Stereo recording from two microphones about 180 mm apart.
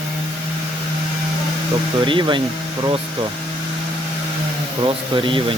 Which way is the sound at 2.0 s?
25° right (ahead or behind).